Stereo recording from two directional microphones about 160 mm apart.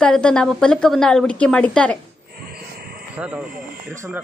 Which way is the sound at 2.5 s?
70° right (ahead or behind).